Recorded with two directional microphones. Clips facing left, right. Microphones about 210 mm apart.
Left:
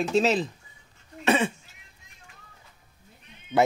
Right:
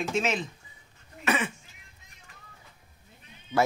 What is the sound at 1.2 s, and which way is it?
Cough, 30° left (ahead or behind).